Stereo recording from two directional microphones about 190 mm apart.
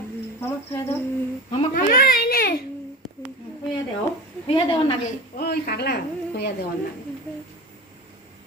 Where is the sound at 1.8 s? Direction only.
45° left (ahead or behind).